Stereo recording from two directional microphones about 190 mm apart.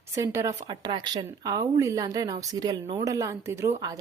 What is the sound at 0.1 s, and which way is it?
A woman's voice, 15° right (ahead or behind).